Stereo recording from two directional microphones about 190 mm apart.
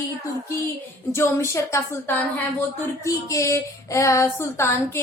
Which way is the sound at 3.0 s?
15° left (ahead or behind).